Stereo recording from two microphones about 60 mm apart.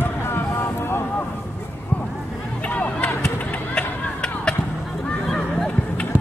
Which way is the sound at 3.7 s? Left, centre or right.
Centre.